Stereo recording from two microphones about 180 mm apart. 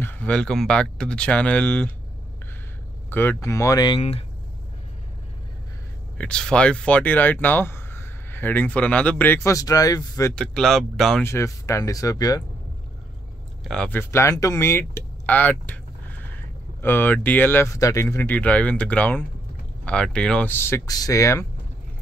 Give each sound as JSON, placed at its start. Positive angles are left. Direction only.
{"t": 0.0, "sound": "speech", "side_deg": 10}
{"t": 3.1, "sound": "speech", "side_deg": 10}
{"t": 6.1, "sound": "speech", "side_deg": 5}
{"t": 10.3, "sound": "speech", "side_deg": 5}
{"t": 11.2, "sound": "speech", "side_deg": 15}
{"t": 13.7, "sound": "speech", "side_deg": 5}
{"t": 15.6, "sound": "a sound", "side_deg": 10}
{"t": 16.8, "sound": "speech", "side_deg": 10}